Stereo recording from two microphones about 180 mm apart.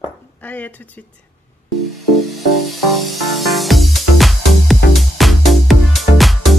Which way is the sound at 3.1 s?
Centre (ahead or behind).